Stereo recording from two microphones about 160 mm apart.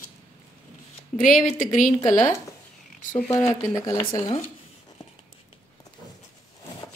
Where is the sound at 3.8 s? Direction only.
25° left (ahead or behind).